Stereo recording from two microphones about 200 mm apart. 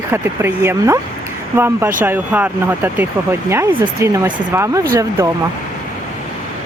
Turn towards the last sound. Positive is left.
turn(degrees=-15)  # may be behind; listen again after turning